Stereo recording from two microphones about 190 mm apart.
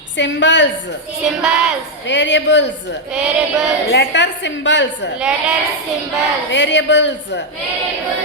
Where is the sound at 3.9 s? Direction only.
70° left (ahead or behind).